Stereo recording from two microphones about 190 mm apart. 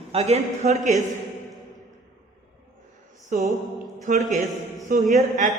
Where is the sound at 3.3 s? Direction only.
45° right (ahead or behind).